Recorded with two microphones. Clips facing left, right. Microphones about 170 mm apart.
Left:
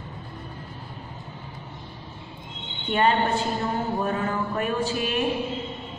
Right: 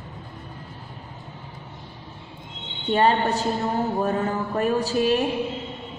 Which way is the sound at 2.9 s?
35° right (ahead or behind).